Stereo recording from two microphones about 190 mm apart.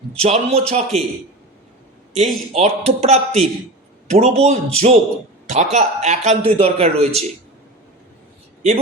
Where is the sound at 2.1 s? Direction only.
35° right (ahead or behind).